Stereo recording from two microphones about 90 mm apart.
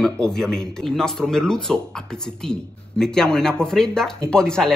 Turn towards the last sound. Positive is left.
turn(degrees=10)  # may be behind; listen again after turning